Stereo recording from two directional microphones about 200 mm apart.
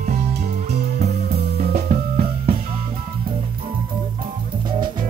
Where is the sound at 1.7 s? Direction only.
40° right (ahead or behind).